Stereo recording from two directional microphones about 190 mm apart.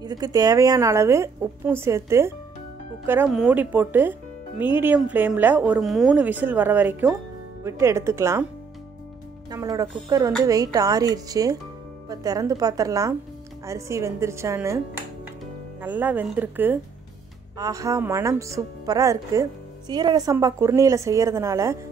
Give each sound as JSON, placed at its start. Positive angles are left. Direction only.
{"t": 0.0, "sound": "speech", "side_deg": -20}
{"t": 9.5, "sound": "speech", "side_deg": -20}